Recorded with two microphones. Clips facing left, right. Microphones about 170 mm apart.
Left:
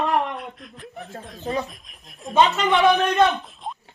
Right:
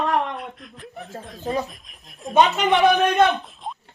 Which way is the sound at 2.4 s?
15° right (ahead or behind).